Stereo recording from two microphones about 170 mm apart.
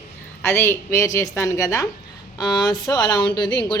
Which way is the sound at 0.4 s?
15° left (ahead or behind).